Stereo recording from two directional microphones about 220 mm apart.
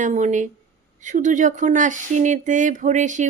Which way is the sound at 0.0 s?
35° right (ahead or behind).